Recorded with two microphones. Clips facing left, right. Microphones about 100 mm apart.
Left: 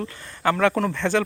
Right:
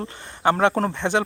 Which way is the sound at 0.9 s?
20° right (ahead or behind).